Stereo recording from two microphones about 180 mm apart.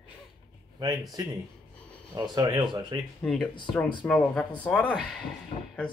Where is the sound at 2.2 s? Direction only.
20° right (ahead or behind).